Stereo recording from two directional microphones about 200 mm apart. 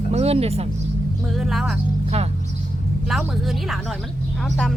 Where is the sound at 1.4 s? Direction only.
Centre (ahead or behind).